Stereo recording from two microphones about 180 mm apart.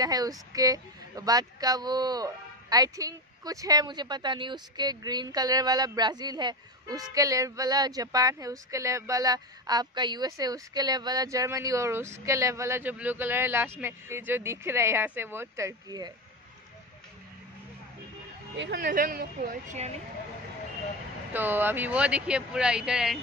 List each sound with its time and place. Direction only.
0.0 s speech: 20° right (ahead or behind)
18.6 s a woman's voice: 65° right (ahead or behind)
21.3 s speech: 10° right (ahead or behind)